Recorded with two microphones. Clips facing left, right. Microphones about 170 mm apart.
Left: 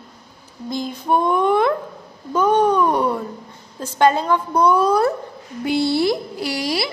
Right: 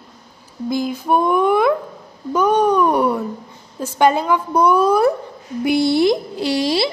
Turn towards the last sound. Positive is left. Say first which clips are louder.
# right 5 dB
turn(degrees=-25)  # may be behind; listen again after turning